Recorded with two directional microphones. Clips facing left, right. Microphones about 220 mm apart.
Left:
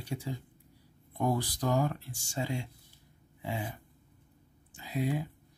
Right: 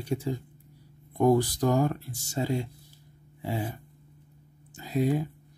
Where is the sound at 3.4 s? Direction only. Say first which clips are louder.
Right 5 dB; 35° right (ahead or behind).